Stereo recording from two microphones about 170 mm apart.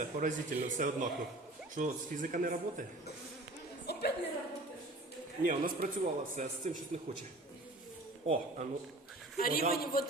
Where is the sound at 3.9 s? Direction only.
75° left (ahead or behind).